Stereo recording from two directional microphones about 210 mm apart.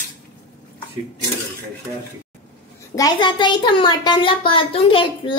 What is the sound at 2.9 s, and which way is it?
A child's voice, 20° left (ahead or behind).